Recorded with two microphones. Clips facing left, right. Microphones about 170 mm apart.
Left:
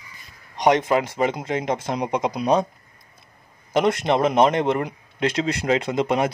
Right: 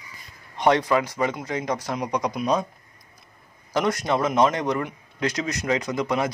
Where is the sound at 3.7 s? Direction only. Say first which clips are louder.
Left 4 dB; 25° left (ahead or behind).